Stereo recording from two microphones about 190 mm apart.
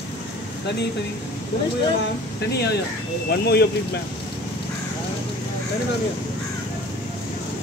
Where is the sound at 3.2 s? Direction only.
60° left (ahead or behind).